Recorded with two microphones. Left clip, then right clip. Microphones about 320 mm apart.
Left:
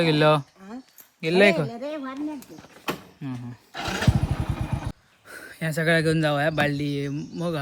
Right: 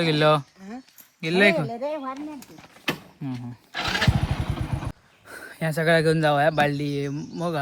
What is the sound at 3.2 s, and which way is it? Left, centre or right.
Speech, centre.